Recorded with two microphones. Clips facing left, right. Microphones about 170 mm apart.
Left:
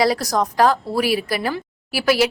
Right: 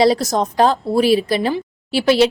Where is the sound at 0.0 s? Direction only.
25° right (ahead or behind).